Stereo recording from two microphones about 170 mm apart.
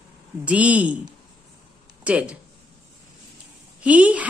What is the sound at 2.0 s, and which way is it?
Speech, 5° right (ahead or behind).